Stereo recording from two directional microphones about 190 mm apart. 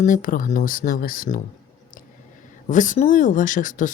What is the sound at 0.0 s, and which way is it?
Speech, 45° left (ahead or behind).